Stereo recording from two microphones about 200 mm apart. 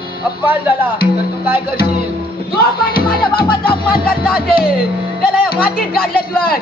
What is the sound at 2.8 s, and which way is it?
Music, 50° left (ahead or behind).